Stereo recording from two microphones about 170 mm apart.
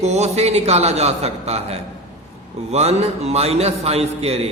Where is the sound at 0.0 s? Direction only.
40° right (ahead or behind).